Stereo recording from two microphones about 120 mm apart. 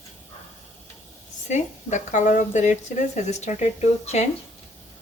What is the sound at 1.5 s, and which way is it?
Speech, 80° left.